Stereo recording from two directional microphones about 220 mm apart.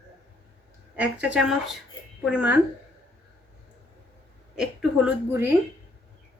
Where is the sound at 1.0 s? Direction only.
5° right (ahead or behind).